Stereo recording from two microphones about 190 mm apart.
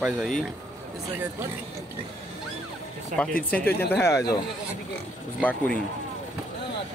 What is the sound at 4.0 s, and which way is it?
Speech, 15° left (ahead or behind).